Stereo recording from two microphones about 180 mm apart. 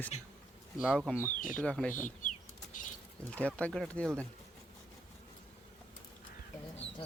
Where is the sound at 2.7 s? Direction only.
45° left (ahead or behind).